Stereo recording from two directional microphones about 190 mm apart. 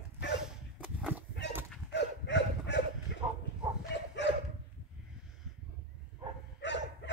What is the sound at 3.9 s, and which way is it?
Dog, 65° left (ahead or behind).